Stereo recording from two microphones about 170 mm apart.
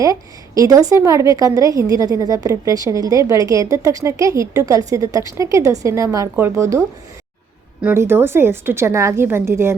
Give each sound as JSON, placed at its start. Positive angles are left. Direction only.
{"t": 0.0, "sound": "a woman's voice", "side_deg": -20}
{"t": 7.9, "sound": "a woman's voice", "side_deg": -15}